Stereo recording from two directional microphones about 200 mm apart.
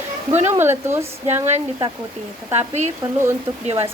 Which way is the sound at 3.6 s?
30° right (ahead or behind).